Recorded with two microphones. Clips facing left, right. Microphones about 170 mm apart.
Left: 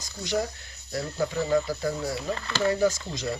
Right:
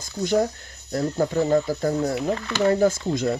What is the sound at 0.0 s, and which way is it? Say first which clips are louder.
Speech: right 7 dB; 50° right (ahead or behind).